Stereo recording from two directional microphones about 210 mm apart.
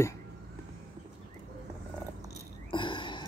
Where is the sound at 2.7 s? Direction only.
25° left (ahead or behind).